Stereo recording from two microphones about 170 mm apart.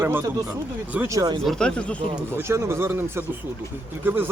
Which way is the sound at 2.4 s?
15° right (ahead or behind).